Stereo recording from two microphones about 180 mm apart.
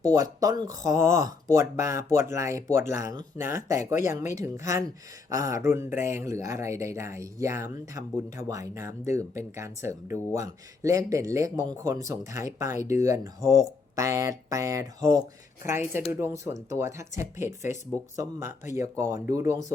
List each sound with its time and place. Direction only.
0.0 s speech: 20° right (ahead or behind)